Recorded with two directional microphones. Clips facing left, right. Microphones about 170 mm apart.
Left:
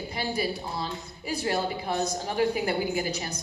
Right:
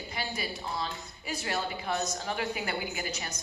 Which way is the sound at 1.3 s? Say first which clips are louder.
Left 6 dB; 30° left (ahead or behind).